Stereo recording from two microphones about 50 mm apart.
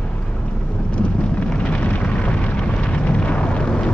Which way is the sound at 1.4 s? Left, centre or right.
Left.